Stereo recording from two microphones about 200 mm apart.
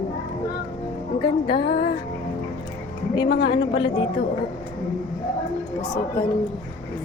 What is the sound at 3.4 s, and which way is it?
Speech, 25° left (ahead or behind).